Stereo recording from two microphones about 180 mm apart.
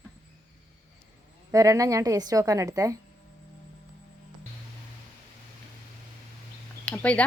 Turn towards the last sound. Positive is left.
turn(degrees=5)  # may be behind; listen again after turning